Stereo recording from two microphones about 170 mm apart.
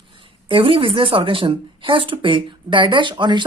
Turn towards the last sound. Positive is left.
turn(degrees=-25)  # may be behind; listen again after turning